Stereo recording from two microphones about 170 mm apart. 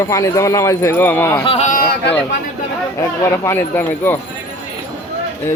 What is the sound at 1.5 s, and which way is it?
Speech, 45° left (ahead or behind).